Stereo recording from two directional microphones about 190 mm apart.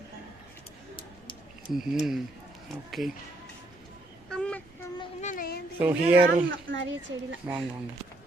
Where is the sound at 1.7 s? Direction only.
Centre (ahead or behind).